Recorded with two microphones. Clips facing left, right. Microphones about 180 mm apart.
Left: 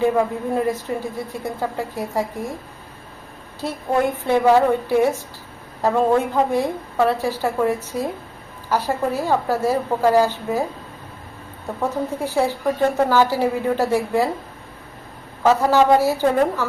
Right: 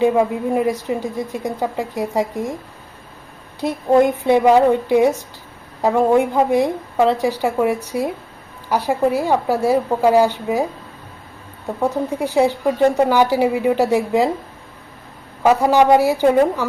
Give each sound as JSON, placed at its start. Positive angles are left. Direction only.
{"t": 0.0, "sound": "a woman's voice", "side_deg": -15}
{"t": 3.6, "sound": "a woman's voice", "side_deg": -15}
{"t": 11.8, "sound": "a woman's voice", "side_deg": -15}
{"t": 15.4, "sound": "a woman's voice", "side_deg": -15}